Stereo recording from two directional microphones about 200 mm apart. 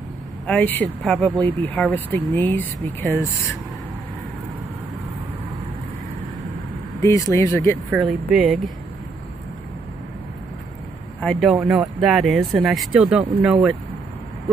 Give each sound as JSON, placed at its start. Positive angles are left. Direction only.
{"t": 0.5, "sound": "speech", "side_deg": 5}
{"t": 7.0, "sound": "speech", "side_deg": 15}
{"t": 7.9, "sound": "speech", "side_deg": -5}
{"t": 11.1, "sound": "speech", "side_deg": 5}